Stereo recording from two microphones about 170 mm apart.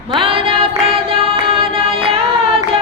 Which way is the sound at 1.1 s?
35° right (ahead or behind).